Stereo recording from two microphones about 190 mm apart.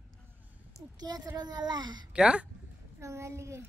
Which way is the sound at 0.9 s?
20° right (ahead or behind).